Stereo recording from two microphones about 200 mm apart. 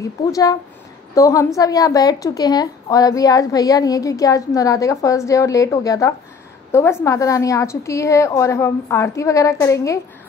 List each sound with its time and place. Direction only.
0.0 s a woman's voice: 15° left (ahead or behind)